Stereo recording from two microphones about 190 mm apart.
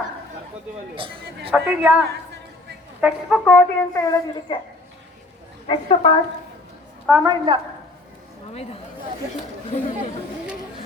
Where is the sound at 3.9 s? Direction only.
15° left (ahead or behind).